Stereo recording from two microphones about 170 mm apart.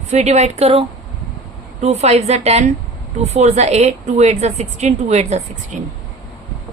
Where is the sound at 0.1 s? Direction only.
40° right (ahead or behind).